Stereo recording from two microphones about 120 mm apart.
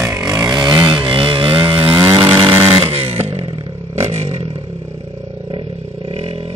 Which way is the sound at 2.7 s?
45° right (ahead or behind).